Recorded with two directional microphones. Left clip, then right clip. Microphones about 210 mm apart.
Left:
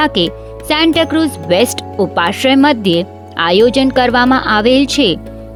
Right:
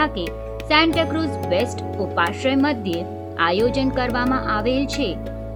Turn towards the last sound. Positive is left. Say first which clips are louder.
# left 11 dB
turn(degrees=50)  # may be behind; listen again after turning